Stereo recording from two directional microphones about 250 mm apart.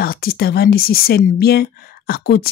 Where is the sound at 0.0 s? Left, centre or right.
Left.